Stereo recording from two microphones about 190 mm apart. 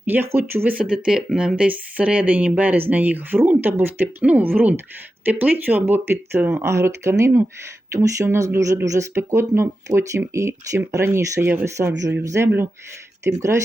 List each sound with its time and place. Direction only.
0.0 s speech: 10° right (ahead or behind)